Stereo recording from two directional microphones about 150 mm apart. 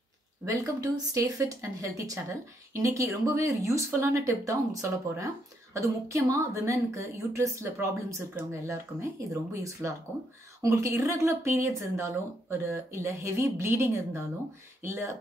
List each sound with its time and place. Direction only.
0.5 s speech: 25° right (ahead or behind)